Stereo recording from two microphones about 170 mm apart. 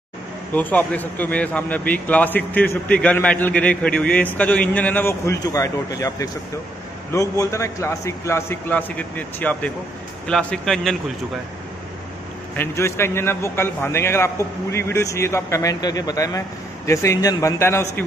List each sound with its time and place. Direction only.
0.5 s a man's voice: 10° left (ahead or behind)
12.5 s speech: 15° left (ahead or behind)